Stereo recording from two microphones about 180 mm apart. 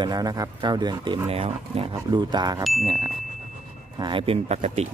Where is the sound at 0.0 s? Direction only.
20° right (ahead or behind).